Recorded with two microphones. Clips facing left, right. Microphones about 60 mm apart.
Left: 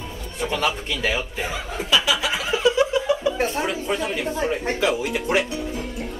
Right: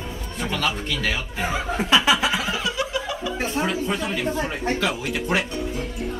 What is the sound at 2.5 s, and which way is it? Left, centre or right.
Laughter, left.